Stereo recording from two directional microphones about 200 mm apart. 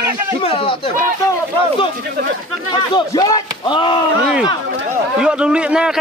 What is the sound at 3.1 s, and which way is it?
Speech, 20° left (ahead or behind).